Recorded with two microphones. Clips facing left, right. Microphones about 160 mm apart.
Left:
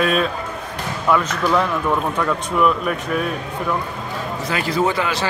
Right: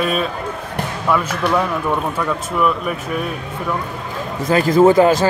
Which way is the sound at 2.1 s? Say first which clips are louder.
Even; 5° right (ahead or behind).